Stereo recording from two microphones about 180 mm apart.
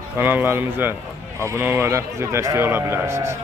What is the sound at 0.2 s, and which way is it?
A man's voice, 10° right (ahead or behind).